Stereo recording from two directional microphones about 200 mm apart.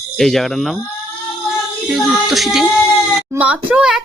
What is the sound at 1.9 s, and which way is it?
A child's voice, centre (ahead or behind).